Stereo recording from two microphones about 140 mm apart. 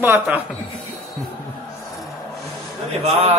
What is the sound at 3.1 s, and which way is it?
Speech, 50° right (ahead or behind).